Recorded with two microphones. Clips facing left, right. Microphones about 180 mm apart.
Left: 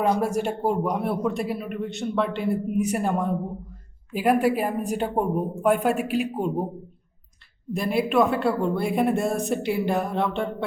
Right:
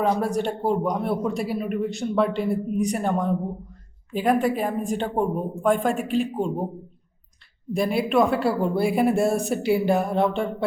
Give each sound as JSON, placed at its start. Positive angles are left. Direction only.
{"t": 0.0, "sound": "a man's voice", "side_deg": 5}
{"t": 7.7, "sound": "a man's voice", "side_deg": 0}